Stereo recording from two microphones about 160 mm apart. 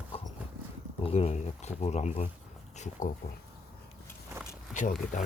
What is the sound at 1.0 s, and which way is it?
Speech, 40° left (ahead or behind).